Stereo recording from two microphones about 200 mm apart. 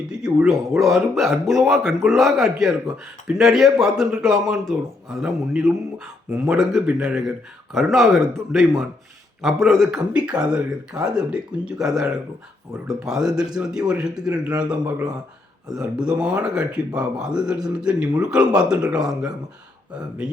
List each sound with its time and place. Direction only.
0.3 s a man's voice: centre (ahead or behind)
15.7 s a man's voice: 5° right (ahead or behind)